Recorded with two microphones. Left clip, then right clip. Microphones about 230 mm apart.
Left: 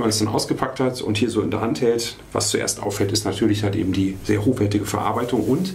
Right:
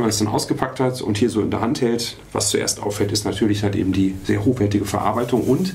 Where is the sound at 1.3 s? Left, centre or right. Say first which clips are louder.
Right 1 dB; right.